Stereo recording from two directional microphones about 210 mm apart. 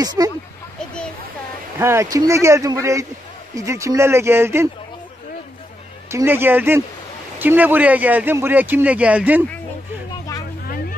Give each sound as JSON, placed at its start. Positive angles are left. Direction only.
{"t": 0.0, "sound": "a man's voice", "side_deg": -15}
{"t": 1.8, "sound": "a man's voice", "side_deg": -10}
{"t": 6.1, "sound": "a man's voice", "side_deg": -10}